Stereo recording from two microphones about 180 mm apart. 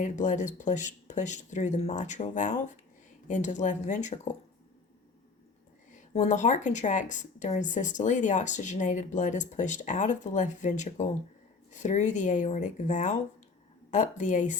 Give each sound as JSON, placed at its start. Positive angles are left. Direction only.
{"t": 0.0, "sound": "speech", "side_deg": 45}
{"t": 5.9, "sound": "speech", "side_deg": 45}